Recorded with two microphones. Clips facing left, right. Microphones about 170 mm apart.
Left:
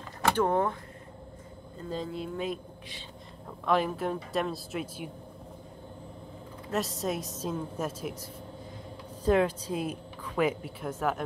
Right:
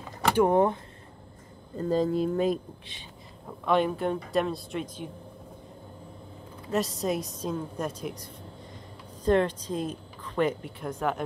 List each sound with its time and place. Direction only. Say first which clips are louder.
0.3 s speech: right 4 dB; 15° right (ahead or behind)
1.8 s speech: right 10 dB; 40° right (ahead or behind)
3.4 s speech: right 2 dB; centre (ahead or behind)
6.7 s speech: right 3 dB; centre (ahead or behind)